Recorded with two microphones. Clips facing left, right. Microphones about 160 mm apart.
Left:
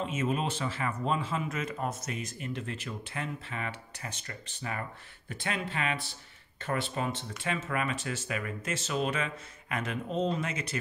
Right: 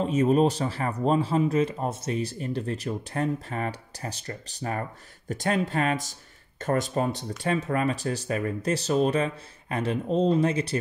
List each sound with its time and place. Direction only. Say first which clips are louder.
0.0 s speech: right 10 dB; 35° right (ahead or behind)